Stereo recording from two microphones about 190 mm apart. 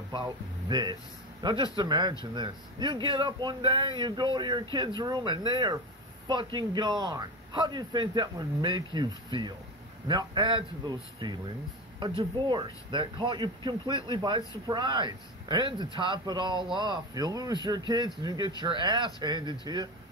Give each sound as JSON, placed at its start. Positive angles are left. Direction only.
{"t": 0.1, "sound": "a man's voice", "side_deg": -20}